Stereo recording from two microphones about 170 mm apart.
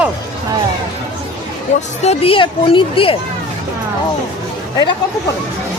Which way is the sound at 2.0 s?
35° left (ahead or behind).